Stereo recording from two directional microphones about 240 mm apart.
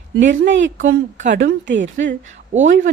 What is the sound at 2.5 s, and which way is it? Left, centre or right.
Speech, right.